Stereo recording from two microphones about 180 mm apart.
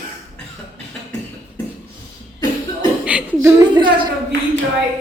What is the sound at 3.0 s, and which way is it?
Chuckle, 5° right (ahead or behind).